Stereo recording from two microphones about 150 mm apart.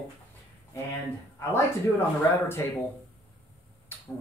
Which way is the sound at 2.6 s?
20° left (ahead or behind).